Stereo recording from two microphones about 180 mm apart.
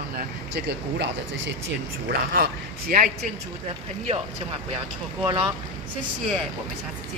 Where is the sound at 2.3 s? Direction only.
50° right (ahead or behind).